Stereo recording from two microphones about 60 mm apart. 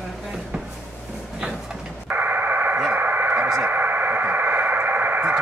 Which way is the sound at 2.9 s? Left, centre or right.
Right.